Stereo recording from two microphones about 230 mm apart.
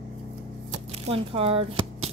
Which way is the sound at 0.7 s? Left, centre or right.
Right.